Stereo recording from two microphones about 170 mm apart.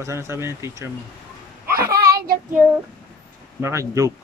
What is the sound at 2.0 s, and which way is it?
Child singing, 65° right (ahead or behind).